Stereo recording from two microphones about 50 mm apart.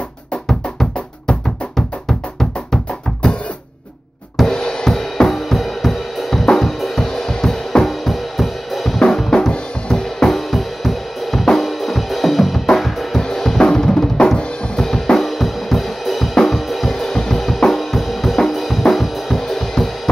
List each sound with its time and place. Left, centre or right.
0.5 s drum: centre
1.8 s music: centre
4.4 s drum kit: centre
6.4 s music: centre
9.0 s drum kit: centre